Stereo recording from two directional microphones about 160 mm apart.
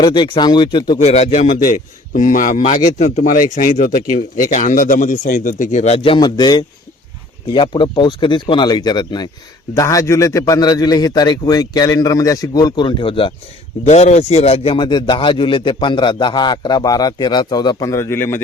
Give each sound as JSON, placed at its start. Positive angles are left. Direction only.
{"t": 0.0, "sound": "a man's voice", "side_deg": 30}
{"t": 1.0, "sound": "a man's voice", "side_deg": 40}
{"t": 13.8, "sound": "a man's voice", "side_deg": 45}